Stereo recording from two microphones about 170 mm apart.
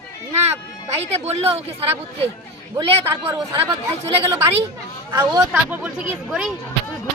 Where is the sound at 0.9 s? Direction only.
40° right (ahead or behind).